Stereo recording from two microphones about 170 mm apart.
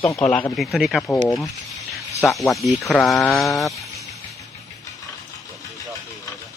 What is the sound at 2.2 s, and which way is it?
A man's voice, centre (ahead or behind).